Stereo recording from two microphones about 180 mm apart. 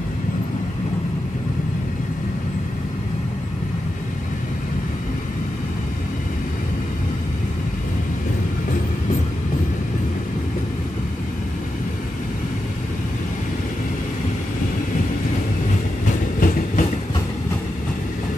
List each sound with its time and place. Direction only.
16.3 s train: 50° left (ahead or behind)